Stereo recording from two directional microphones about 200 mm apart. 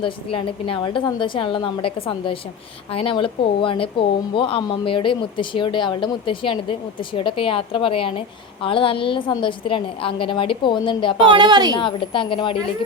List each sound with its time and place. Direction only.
0.0 s speech: 25° left (ahead or behind)
11.3 s a woman's voice: 20° right (ahead or behind)
11.7 s speech: 25° left (ahead or behind)